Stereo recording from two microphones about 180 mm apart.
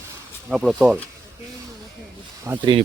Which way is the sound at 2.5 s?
15° right (ahead or behind).